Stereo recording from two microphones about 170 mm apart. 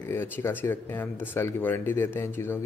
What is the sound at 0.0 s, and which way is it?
Speech, 15° left (ahead or behind).